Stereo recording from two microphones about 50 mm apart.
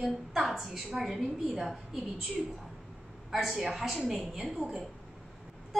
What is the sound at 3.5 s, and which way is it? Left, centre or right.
Speech, centre.